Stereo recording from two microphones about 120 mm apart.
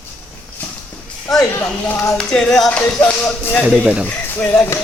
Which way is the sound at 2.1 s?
5° left (ahead or behind).